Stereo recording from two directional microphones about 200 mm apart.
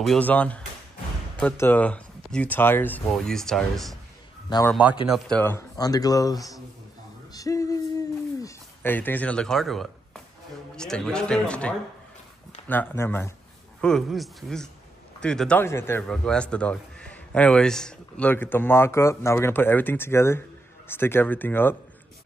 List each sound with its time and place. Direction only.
0.0 s a man's voice: 5° left (ahead or behind)
5.0 s speech: centre (ahead or behind)
5.4 s a man's voice: 10° left (ahead or behind)
7.3 s a sound: 15° left (ahead or behind); by 10.2 s centre (ahead or behind)
10.8 s a man's voice: 5° left (ahead or behind)